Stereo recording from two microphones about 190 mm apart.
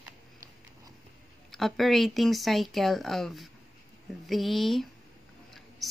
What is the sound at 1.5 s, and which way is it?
Speech, centre (ahead or behind).